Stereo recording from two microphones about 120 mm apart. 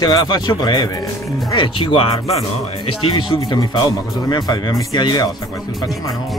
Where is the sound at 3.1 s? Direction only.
40° left (ahead or behind).